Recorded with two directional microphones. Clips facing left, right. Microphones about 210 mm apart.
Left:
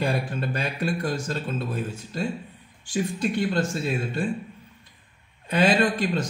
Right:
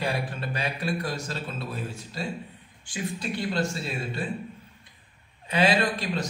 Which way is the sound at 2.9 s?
50° left (ahead or behind).